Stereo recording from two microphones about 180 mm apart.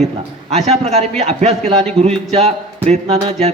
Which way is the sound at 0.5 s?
35° right (ahead or behind).